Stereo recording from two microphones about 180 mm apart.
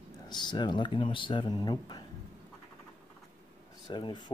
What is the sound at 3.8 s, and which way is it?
Speech, 25° left (ahead or behind).